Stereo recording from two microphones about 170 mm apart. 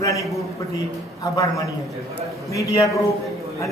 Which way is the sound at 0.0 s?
20° left (ahead or behind).